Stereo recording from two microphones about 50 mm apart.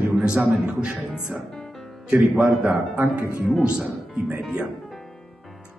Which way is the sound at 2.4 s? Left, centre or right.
Right.